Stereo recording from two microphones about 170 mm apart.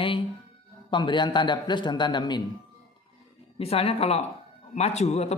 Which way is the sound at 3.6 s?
35° left (ahead or behind).